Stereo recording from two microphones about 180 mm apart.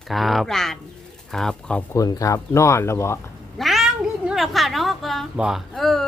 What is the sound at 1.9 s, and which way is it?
Speech, 20° left (ahead or behind).